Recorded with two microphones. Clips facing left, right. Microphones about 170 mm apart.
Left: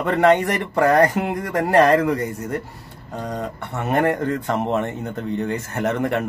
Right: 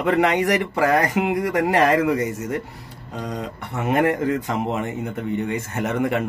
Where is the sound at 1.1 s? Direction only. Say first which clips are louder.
Right 2 dB; 80° right.